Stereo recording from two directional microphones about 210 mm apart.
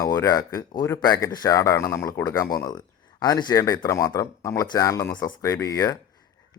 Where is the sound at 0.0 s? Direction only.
15° left (ahead or behind).